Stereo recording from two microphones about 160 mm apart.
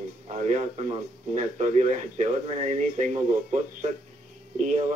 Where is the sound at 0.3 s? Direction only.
50° right (ahead or behind).